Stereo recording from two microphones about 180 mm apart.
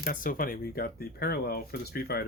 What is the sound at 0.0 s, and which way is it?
Speech, 50° left (ahead or behind).